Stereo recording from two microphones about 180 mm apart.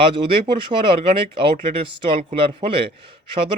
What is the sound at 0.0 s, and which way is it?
Speech, 30° right (ahead or behind).